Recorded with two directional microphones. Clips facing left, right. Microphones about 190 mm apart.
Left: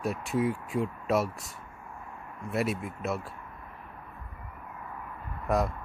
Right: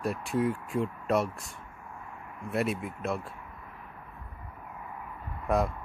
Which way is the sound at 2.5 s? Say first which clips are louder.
Even; centre (ahead or behind).